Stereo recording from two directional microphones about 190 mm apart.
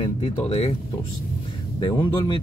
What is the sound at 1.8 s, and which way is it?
Speech, 25° left (ahead or behind).